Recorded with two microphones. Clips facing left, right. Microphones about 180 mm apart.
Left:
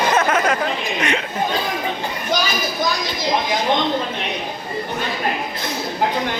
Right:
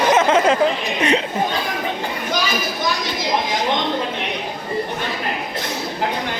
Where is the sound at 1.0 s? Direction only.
30° right (ahead or behind).